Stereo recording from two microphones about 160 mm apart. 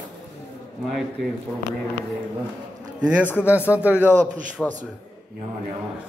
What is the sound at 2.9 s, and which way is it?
A man's voice, 5° right (ahead or behind).